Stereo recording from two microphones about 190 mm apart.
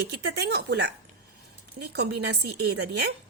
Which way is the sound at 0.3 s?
60° right (ahead or behind).